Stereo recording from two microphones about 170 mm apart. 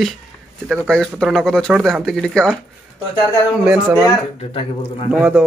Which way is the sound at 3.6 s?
10° right (ahead or behind).